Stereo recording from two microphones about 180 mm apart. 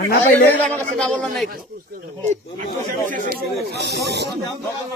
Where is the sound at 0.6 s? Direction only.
5° left (ahead or behind).